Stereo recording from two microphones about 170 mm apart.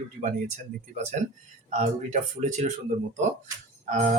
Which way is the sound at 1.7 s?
45° right (ahead or behind).